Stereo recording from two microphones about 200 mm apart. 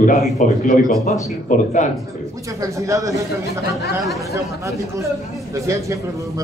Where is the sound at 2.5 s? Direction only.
15° right (ahead or behind).